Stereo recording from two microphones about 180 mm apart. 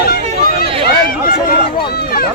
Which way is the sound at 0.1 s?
55° left (ahead or behind).